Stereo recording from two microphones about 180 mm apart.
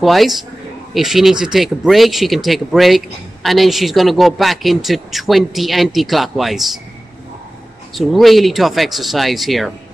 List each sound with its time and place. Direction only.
0.0 s speech: centre (ahead or behind)
7.9 s speech: centre (ahead or behind)